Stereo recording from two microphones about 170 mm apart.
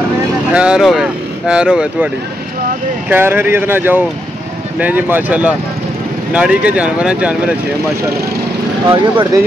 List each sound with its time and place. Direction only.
0.5 s speech: 5° right (ahead or behind)
3.1 s speech: 15° right (ahead or behind)
8.9 s speech: 25° right (ahead or behind)